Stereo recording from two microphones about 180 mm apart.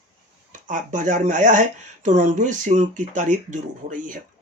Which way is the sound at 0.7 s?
45° right (ahead or behind).